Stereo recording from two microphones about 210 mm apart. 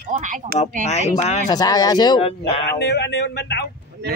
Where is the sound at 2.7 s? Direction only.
50° left (ahead or behind).